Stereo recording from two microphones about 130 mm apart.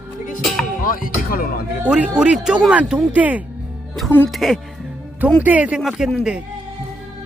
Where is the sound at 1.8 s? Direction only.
10° right (ahead or behind).